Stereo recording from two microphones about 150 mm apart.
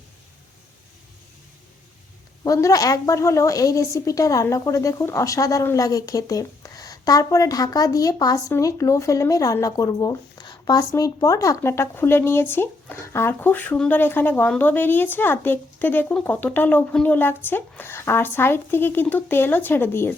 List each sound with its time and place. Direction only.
2.4 s a woman's voice: 20° left (ahead or behind)